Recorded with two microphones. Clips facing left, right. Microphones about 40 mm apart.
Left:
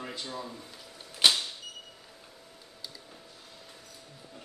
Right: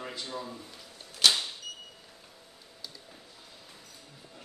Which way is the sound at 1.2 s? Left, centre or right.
Centre.